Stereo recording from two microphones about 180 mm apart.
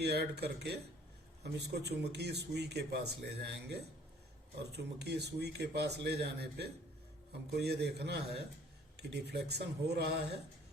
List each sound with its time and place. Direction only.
0.0 s a man's voice: 65° right (ahead or behind)